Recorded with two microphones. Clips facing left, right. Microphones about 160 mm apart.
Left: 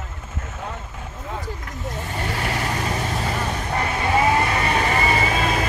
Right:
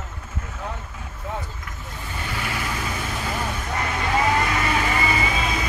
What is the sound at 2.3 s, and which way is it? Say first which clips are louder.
Vehicle: left 3 dB; 35° left (ahead or behind).